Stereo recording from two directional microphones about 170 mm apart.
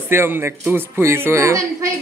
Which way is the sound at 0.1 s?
15° right (ahead or behind).